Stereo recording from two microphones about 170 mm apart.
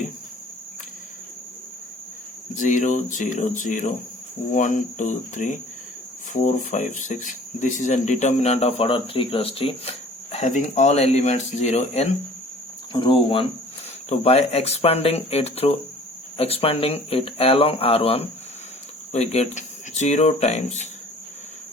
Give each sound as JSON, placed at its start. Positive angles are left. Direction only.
{"t": 2.6, "sound": "speech", "side_deg": 45}
{"t": 12.9, "sound": "speech", "side_deg": 30}